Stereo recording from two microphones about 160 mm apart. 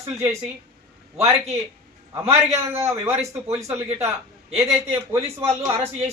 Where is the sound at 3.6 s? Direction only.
15° right (ahead or behind).